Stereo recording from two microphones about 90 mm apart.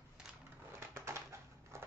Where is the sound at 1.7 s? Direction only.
30° right (ahead or behind).